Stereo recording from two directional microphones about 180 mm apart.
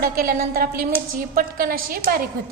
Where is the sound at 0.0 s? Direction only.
55° right (ahead or behind).